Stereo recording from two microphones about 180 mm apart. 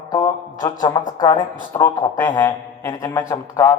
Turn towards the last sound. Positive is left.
turn(degrees=15)  # may be behind; listen again after turning